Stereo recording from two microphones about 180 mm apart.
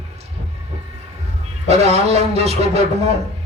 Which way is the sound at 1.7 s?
35° right (ahead or behind).